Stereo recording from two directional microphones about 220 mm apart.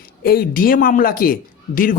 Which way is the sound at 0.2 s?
40° left (ahead or behind).